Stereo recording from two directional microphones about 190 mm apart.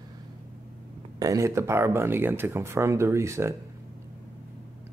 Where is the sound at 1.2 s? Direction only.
15° right (ahead or behind).